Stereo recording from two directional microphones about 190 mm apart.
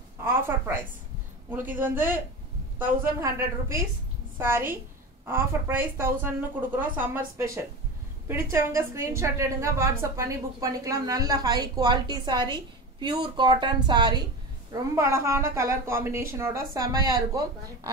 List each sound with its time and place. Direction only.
0.2 s a woman's voice: 10° right (ahead or behind)